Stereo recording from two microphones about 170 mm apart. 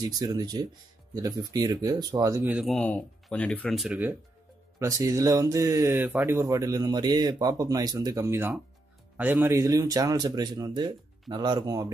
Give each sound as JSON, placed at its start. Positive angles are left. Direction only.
{"t": 0.0, "sound": "speech", "side_deg": -25}
{"t": 2.5, "sound": "speech", "side_deg": 0}
{"t": 4.7, "sound": "speech", "side_deg": -20}